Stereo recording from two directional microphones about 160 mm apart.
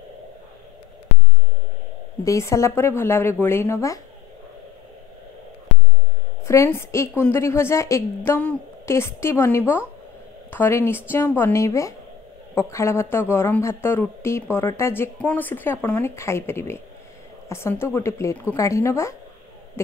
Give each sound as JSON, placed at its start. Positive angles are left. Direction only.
{"t": 2.2, "sound": "speech", "side_deg": 20}
{"t": 6.4, "sound": "speech", "side_deg": 20}